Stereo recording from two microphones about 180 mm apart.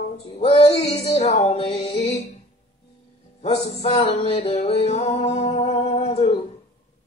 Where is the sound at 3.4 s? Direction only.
35° left (ahead or behind).